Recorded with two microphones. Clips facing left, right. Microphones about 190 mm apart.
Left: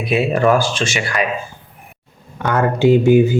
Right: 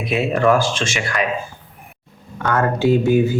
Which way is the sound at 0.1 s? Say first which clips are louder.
Left 2 dB; 5° left (ahead or behind).